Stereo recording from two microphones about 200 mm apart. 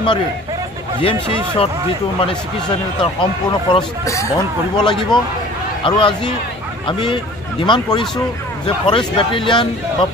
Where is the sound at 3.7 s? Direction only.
15° left (ahead or behind).